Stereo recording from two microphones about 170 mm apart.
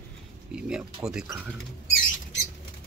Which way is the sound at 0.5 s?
5° right (ahead or behind).